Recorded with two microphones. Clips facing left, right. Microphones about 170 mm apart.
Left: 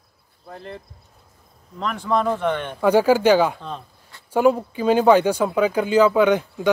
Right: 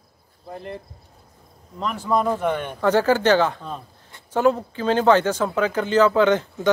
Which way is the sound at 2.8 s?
10° left (ahead or behind).